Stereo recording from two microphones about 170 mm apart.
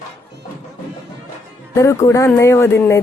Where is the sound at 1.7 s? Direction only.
15° left (ahead or behind).